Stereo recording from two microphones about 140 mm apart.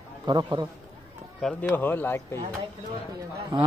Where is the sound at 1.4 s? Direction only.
5° left (ahead or behind).